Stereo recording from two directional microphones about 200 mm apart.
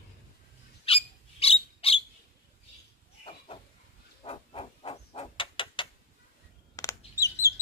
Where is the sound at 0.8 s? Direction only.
30° left (ahead or behind).